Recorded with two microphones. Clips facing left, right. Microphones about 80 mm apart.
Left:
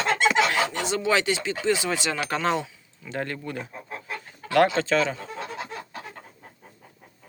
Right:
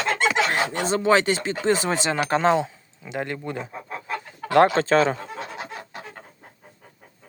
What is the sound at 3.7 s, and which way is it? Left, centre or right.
Chicken, right.